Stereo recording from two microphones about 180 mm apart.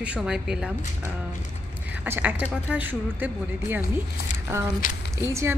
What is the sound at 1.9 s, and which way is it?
Speech, 10° right (ahead or behind).